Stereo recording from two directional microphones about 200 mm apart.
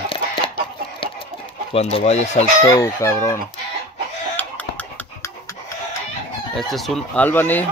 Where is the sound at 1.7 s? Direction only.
30° left (ahead or behind).